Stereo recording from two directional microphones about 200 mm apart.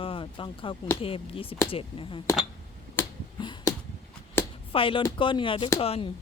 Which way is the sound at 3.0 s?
10° left (ahead or behind).